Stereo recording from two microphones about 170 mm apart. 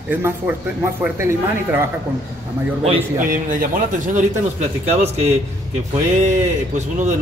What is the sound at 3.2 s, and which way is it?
A man's voice, 50° right (ahead or behind).